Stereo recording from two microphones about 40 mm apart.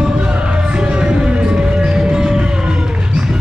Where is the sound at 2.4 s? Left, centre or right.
Right.